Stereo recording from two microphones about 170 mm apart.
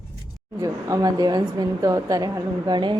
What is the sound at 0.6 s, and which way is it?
A woman's voice, 20° right (ahead or behind).